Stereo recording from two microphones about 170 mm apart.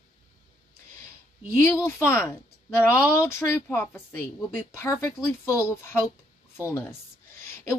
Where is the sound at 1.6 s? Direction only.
15° left (ahead or behind).